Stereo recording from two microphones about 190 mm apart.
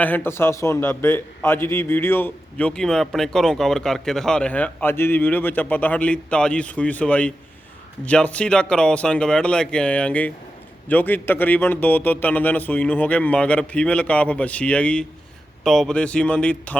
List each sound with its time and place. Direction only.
0.0 s a man's voice: 10° left (ahead or behind)